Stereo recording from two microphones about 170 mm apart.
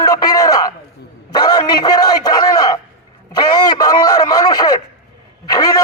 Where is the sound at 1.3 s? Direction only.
25° left (ahead or behind).